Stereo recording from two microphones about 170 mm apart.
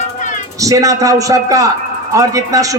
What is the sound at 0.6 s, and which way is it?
A man's voice, 20° right (ahead or behind).